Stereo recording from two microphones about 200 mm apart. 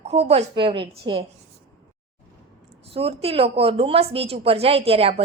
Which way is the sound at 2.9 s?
30° right (ahead or behind).